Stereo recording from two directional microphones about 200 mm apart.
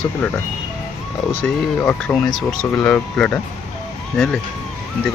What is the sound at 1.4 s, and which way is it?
Speech, 10° left (ahead or behind).